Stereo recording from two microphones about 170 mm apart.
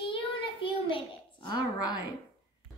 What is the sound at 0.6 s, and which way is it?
A child's voice, 30° left (ahead or behind).